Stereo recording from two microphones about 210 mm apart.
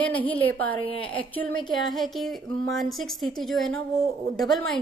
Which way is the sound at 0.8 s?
25° left (ahead or behind).